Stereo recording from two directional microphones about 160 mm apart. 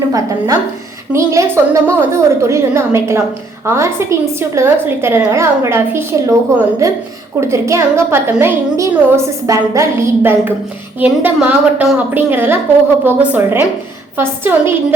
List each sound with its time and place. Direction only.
0.1 s a woman's voice: 20° right (ahead or behind)